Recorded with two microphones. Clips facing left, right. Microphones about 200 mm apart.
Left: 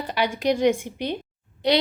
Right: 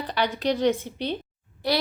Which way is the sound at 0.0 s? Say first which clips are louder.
Left 2 dB; 10° left (ahead or behind).